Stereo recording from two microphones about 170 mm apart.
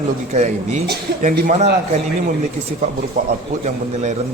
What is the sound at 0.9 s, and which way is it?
Speech, 65° right (ahead or behind).